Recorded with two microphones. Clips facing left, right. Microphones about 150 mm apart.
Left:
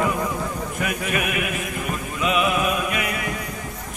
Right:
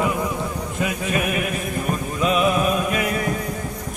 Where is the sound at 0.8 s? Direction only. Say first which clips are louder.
Right 3 dB; 30° right (ahead or behind).